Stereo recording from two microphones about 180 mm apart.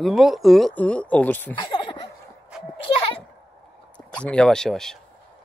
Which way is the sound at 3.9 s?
5° left (ahead or behind).